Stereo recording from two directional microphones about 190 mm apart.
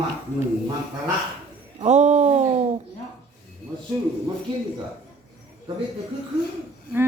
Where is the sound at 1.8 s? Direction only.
35° right (ahead or behind).